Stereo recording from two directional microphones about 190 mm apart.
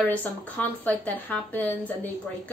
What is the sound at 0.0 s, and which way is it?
A woman's voice, 10° left (ahead or behind).